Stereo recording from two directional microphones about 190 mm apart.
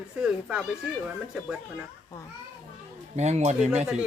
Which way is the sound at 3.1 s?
35° right (ahead or behind).